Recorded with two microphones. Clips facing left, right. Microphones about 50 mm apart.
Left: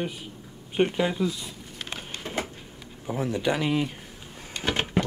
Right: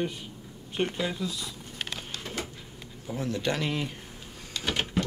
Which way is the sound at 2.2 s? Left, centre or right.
Left.